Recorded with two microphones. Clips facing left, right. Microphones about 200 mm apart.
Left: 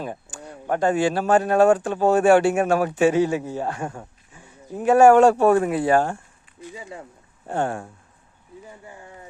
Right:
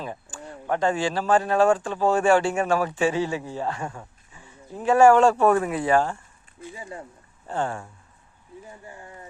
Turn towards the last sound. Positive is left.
turn(degrees=65)  # may be behind; listen again after turning